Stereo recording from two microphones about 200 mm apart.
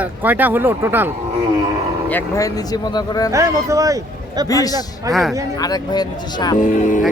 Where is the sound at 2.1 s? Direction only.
10° left (ahead or behind).